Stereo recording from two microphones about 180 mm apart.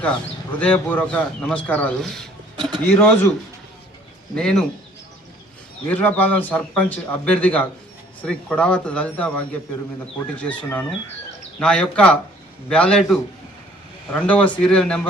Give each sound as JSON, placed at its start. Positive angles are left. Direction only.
{"t": 0.6, "sound": "speech", "side_deg": 10}
{"t": 2.6, "sound": "a sound", "side_deg": -25}
{"t": 2.8, "sound": "speech", "side_deg": 10}
{"t": 4.4, "sound": "speech", "side_deg": 5}
{"t": 5.9, "sound": "speech", "side_deg": 10}